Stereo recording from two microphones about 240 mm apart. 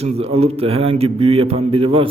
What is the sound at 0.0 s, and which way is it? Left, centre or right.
Speech, right.